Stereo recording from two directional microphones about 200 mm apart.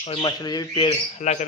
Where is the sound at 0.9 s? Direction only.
35° left (ahead or behind).